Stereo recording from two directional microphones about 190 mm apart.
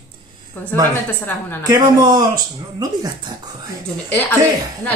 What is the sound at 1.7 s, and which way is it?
Speech, 20° right (ahead or behind).